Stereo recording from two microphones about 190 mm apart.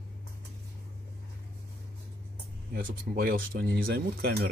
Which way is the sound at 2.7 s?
50° right (ahead or behind).